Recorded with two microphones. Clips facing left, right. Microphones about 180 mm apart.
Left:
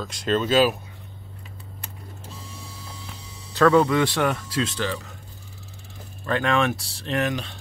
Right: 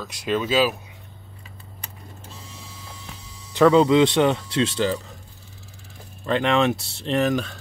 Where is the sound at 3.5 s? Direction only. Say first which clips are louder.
Right 3 dB; 20° right (ahead or behind).